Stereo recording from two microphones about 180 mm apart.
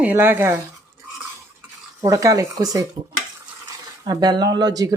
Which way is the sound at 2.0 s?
20° right (ahead or behind).